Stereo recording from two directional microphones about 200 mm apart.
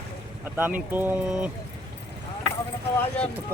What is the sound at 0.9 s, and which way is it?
Speech, 10° right (ahead or behind).